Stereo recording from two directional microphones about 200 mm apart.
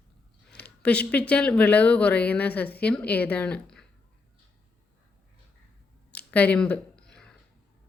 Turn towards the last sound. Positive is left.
turn(degrees=5)  # may be behind; listen again after turning